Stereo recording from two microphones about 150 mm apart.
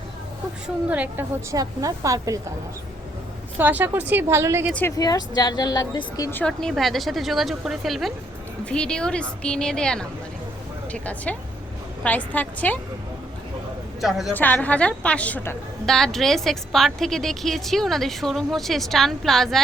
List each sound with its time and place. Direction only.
0.9 s a woman's voice: 10° right (ahead or behind)
1.5 s a woman's voice: 25° right (ahead or behind)
3.6 s a woman's voice: 15° right (ahead or behind)
4.7 s a woman's voice: 15° left (ahead or behind)
4.9 s a woman's voice: 25° left (ahead or behind)
6.3 s a woman's voice: 5° left (ahead or behind)
14.0 s a woman's voice: centre (ahead or behind)
14.3 s a woman's voice: 10° left (ahead or behind)